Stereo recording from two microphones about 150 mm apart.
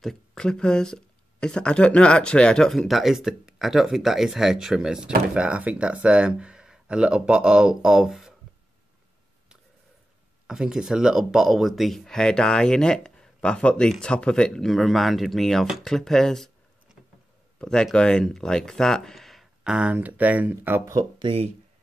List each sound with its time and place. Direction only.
0.0 s speech: 5° left (ahead or behind)
10.4 s speech: 5° right (ahead or behind)
17.6 s speech: 5° left (ahead or behind); by 21.0 s 15° right (ahead or behind)
21.2 s speech: 40° right (ahead or behind)